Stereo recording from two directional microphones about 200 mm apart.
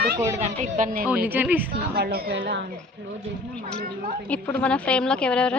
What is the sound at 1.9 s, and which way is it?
Speech, 50° right (ahead or behind).